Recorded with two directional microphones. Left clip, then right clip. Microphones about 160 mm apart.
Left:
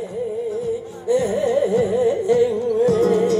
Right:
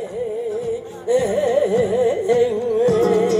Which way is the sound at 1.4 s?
5° left (ahead or behind).